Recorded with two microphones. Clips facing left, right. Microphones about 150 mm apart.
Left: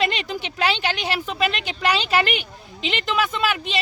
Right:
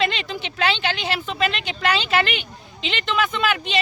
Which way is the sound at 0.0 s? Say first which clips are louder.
Even; 10° left (ahead or behind).